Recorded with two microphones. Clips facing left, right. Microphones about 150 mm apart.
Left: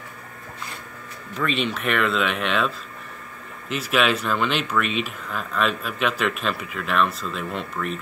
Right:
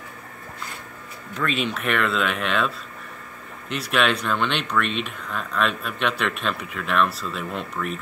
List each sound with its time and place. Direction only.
1.3 s speech: centre (ahead or behind)